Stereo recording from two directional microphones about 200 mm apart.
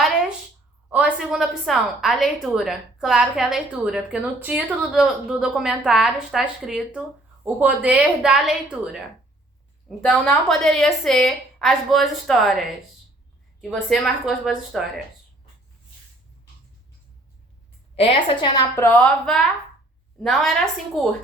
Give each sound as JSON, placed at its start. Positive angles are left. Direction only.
{"t": 0.0, "sound": "a sound", "side_deg": 0}
{"t": 0.9, "sound": "a woman's voice", "side_deg": -5}
{"t": 10.1, "sound": "a woman's voice", "side_deg": 0}
{"t": 13.9, "sound": "a woman's voice", "side_deg": 0}
{"t": 17.9, "sound": "a woman's voice", "side_deg": 30}
{"t": 18.9, "sound": "a woman's voice", "side_deg": 5}